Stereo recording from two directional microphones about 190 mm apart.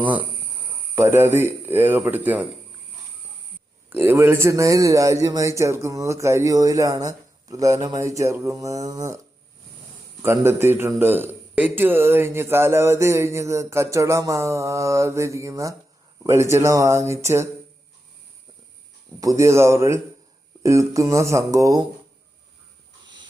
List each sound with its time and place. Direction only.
0.0 s a man's voice: 10° right (ahead or behind)
3.8 s a man's voice: 10° right (ahead or behind)
10.2 s a man's voice: 10° right (ahead or behind)
19.2 s a man's voice: 15° right (ahead or behind)